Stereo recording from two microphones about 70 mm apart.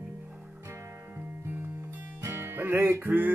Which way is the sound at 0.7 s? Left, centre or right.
Right.